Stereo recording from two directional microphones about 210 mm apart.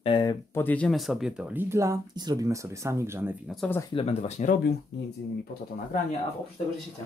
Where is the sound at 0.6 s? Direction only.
5° left (ahead or behind); by 3.3 s 10° right (ahead or behind).